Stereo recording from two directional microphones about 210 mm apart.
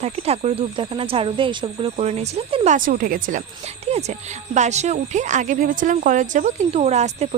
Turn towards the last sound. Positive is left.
turn(degrees=-30)  # may be behind; listen again after turning